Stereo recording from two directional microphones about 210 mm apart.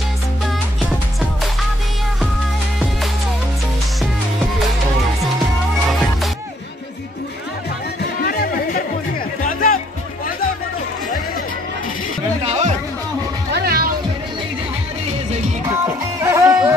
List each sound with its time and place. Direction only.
8.2 s music: 45° left (ahead or behind)
12.4 s music: 30° right (ahead or behind)
13.5 s music: 50° right (ahead or behind)
15.8 s music: 15° right (ahead or behind)